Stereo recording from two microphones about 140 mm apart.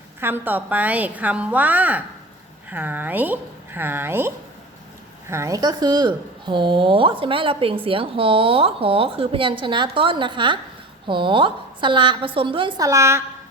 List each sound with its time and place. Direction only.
0.2 s a woman's voice: 15° right (ahead or behind)
5.3 s a woman's voice: 20° right (ahead or behind)